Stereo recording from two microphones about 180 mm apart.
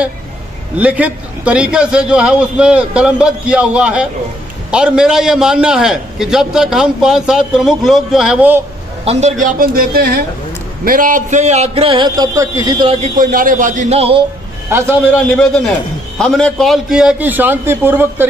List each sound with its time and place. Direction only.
0.7 s a man's voice: 10° right (ahead or behind)
9.0 s a woman's voice: 35° right (ahead or behind)
13.2 s a woman's voice: 50° right (ahead or behind); by 14.2 s 35° right (ahead or behind)
14.7 s a man's voice: 15° right (ahead or behind)
15.3 s a man's voice: 5° left (ahead or behind); by 18.2 s 10° right (ahead or behind)